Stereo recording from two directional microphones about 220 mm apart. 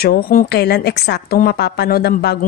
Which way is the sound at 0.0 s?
40° left (ahead or behind).